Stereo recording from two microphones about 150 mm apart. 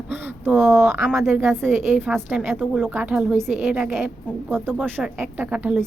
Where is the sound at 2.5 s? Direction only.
5° right (ahead or behind).